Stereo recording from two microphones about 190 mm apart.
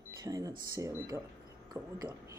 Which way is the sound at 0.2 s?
20° right (ahead or behind).